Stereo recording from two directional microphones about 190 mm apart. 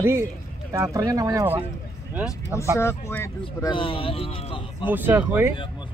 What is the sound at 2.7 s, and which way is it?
Speech, 15° left (ahead or behind).